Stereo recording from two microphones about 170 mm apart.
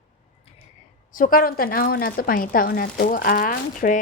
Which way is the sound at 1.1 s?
55° left (ahead or behind).